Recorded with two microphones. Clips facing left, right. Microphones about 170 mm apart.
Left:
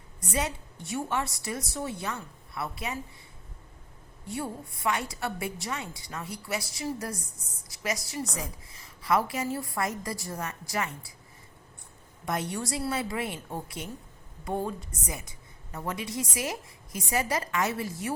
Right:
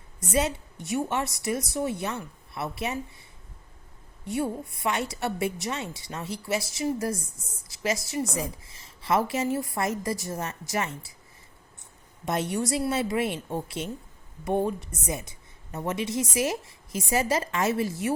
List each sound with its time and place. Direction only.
0.3 s a woman's voice: 25° right (ahead or behind)
4.3 s a woman's voice: 20° right (ahead or behind)
12.2 s a woman's voice: 25° right (ahead or behind)